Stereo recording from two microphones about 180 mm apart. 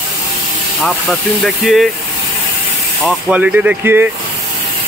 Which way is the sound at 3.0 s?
5° right (ahead or behind).